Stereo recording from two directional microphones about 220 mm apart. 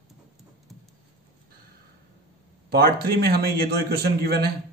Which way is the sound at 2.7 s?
45° right (ahead or behind).